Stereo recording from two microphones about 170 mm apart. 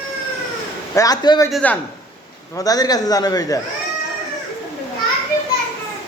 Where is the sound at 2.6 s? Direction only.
20° left (ahead or behind).